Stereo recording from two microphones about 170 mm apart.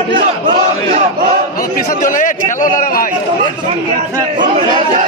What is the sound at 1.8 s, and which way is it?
A man's voice, 50° left (ahead or behind).